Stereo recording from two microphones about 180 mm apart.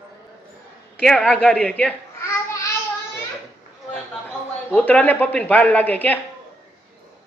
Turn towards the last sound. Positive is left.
turn(degrees=10)  # may be behind; listen again after turning